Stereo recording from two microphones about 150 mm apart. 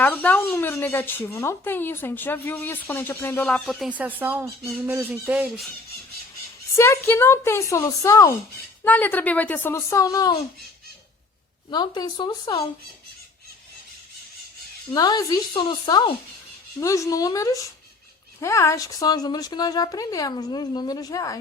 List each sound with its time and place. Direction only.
0.0 s speech: 10° left (ahead or behind)
3.7 s speech: 5° right (ahead or behind)
6.7 s speech: 15° left (ahead or behind)
11.7 s speech: 30° left (ahead or behind)
14.9 s speech: 25° left (ahead or behind)
16.8 s speech: 20° left (ahead or behind)